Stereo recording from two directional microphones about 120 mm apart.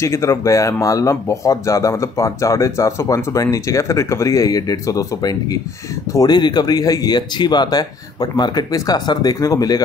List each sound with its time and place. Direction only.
0.0 s speech: 25° left (ahead or behind)